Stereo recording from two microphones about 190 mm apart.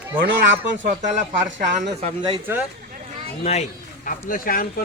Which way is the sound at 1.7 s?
35° right (ahead or behind).